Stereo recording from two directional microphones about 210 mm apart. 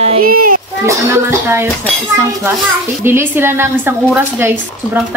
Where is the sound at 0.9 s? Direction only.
10° right (ahead or behind).